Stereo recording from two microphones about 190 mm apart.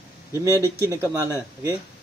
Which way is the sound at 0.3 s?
15° left (ahead or behind).